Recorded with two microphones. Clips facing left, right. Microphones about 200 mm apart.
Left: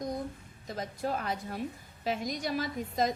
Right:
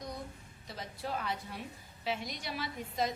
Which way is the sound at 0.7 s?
45° left (ahead or behind).